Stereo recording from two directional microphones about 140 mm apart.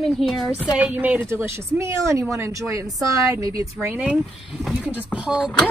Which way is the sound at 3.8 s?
10° right (ahead or behind).